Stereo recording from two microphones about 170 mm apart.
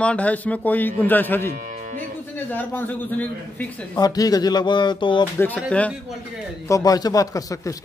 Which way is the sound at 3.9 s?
20° left (ahead or behind).